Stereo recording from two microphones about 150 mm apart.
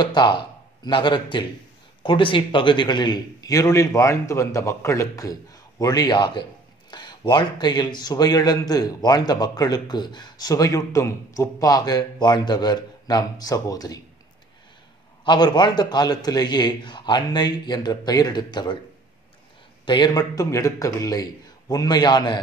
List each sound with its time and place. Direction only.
0.0 s speech: 30° left (ahead or behind)
15.2 s speech: 30° left (ahead or behind)
19.8 s speech: 30° left (ahead or behind)